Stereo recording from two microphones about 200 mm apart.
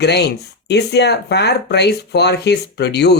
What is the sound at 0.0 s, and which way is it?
Speech, 55° left (ahead or behind).